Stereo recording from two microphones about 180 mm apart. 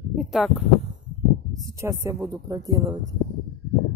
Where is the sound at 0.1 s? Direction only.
Centre (ahead or behind).